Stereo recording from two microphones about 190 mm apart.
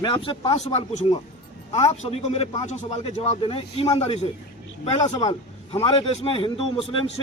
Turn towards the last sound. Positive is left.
turn(degrees=30)  # may be behind; listen again after turning